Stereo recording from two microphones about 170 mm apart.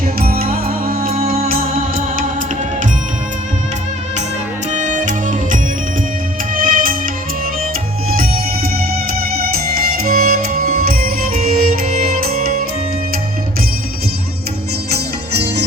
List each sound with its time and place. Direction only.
0.2 s music: 60° right (ahead or behind)
4.7 s music: 45° right (ahead or behind)
8.1 s music: 60° right (ahead or behind)
14.8 s music: 70° right (ahead or behind)